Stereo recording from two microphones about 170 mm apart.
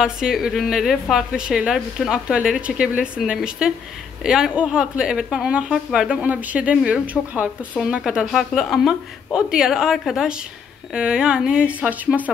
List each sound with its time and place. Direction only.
0.0 s a woman's voice: 5° right (ahead or behind)